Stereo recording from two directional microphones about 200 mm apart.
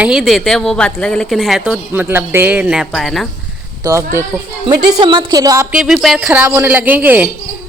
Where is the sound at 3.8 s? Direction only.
15° right (ahead or behind).